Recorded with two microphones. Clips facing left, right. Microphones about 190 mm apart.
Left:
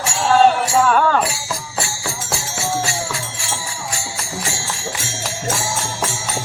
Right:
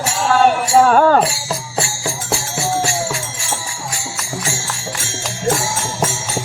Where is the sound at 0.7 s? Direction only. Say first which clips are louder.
Right 4 dB; 40° right (ahead or behind).